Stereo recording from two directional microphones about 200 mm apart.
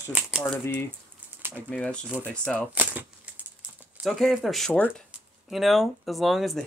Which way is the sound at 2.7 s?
5° right (ahead or behind).